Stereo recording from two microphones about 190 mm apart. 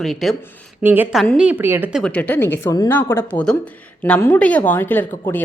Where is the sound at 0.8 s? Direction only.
10° right (ahead or behind).